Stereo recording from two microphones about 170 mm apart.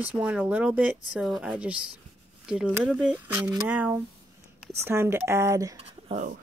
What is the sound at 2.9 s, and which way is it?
Speech, 5° right (ahead or behind).